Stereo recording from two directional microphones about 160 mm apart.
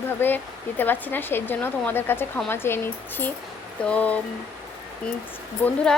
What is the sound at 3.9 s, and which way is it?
Speech, 10° left (ahead or behind).